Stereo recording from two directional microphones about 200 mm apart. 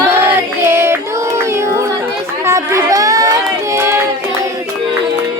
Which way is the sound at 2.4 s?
10° right (ahead or behind).